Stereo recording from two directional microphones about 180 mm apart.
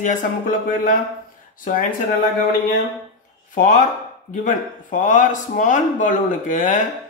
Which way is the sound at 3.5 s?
45° left (ahead or behind).